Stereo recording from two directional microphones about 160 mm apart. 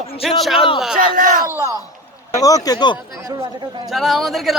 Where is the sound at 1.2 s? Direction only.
55° right (ahead or behind).